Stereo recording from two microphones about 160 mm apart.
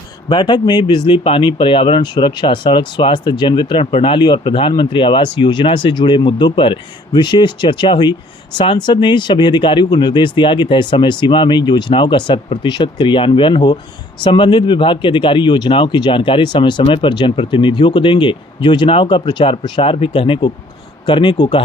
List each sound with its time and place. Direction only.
0.3 s speech: 30° left (ahead or behind)